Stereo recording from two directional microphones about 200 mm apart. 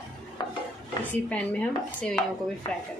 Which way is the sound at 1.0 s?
5° left (ahead or behind).